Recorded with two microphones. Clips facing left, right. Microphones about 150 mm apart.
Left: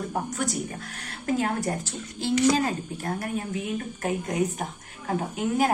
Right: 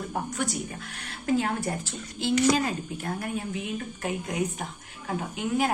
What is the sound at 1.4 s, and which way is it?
A woman's voice, 40° left (ahead or behind).